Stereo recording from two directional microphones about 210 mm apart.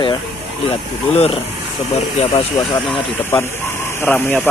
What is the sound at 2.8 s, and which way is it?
Speech, 10° left (ahead or behind).